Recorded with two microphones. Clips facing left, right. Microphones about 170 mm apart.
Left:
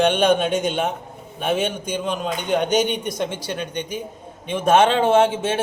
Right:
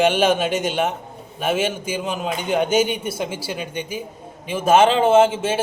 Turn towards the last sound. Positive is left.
turn(degrees=0)  # may be behind; listen again after turning